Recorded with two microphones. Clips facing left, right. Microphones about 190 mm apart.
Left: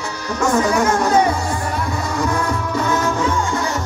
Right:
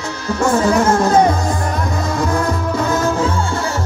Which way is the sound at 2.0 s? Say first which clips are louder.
Right 3 dB; 35° right (ahead or behind).